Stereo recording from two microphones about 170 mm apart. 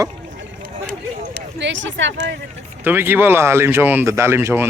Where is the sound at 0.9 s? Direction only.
70° right (ahead or behind); by 2.4 s 90° right.